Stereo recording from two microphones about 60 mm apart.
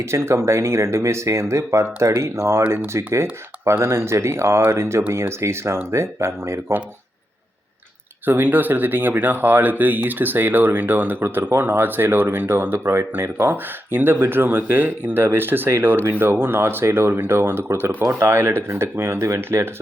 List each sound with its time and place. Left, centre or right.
0.0 s speech: right
5.0 s speech: right
5.4 s speech: right
8.2 s speech: right